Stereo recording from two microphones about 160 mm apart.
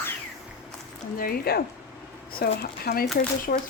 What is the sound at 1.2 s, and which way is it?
A woman's voice, 75° left (ahead or behind).